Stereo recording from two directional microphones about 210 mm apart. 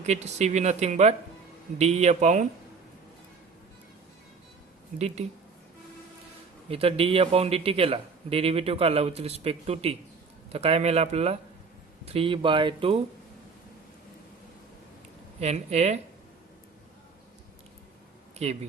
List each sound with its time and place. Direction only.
0.0 s speech: 35° right (ahead or behind)
4.9 s speech: 30° right (ahead or behind)
6.7 s a man's voice: 30° right (ahead or behind)
15.4 s speech: 30° right (ahead or behind)
18.4 s speech: 30° right (ahead or behind)